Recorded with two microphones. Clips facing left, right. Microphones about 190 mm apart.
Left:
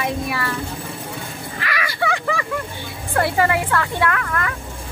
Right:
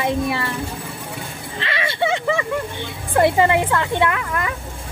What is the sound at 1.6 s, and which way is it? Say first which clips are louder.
A woman's voice: right 2 dB; 25° right (ahead or behind).